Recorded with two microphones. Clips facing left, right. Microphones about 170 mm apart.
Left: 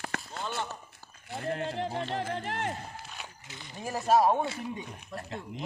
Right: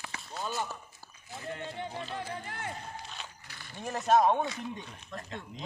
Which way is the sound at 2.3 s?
75° left (ahead or behind).